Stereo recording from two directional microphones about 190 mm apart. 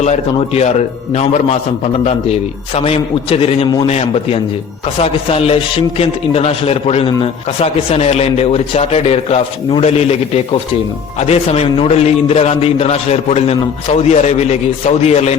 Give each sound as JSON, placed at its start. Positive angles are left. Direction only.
{"t": 0.0, "sound": "speech", "side_deg": 35}
{"t": 2.7, "sound": "speech", "side_deg": 30}